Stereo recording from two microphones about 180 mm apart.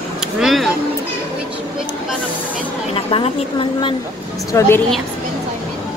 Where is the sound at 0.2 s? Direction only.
Centre (ahead or behind).